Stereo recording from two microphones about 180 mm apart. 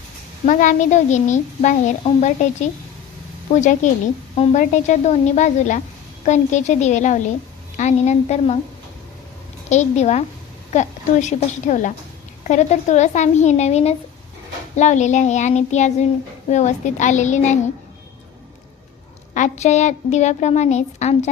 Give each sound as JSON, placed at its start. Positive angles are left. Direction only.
{"t": 0.4, "sound": "a woman's voice", "side_deg": 45}
{"t": 9.6, "sound": "a woman's voice", "side_deg": 40}
{"t": 19.3, "sound": "a woman's voice", "side_deg": 40}